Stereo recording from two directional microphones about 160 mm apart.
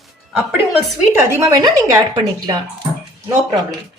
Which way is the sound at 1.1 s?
15° right (ahead or behind).